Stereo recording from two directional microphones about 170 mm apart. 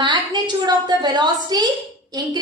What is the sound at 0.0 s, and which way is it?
A woman's voice, 25° right (ahead or behind).